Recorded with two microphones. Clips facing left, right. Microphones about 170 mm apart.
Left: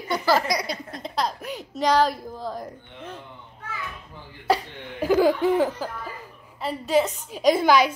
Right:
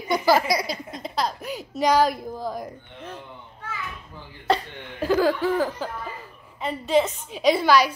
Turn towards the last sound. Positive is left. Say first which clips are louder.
# even
turn(degrees=15)  # may be behind; listen again after turning